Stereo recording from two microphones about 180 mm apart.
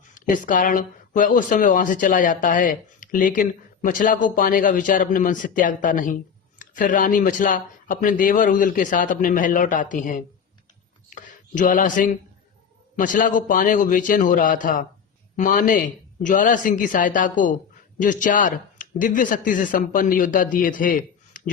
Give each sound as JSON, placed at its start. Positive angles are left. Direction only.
{"t": 0.1, "sound": "speech", "side_deg": 50}